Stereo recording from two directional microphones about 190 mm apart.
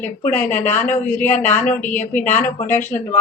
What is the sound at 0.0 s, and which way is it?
Speech, 10° left (ahead or behind).